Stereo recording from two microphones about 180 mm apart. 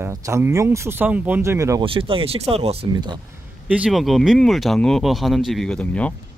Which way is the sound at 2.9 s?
25° right (ahead or behind).